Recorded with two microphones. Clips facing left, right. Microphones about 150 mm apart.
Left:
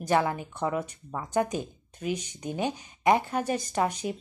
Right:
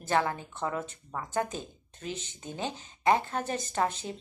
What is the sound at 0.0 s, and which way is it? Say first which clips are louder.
A woman's voice: left 3 dB; 15° left (ahead or behind).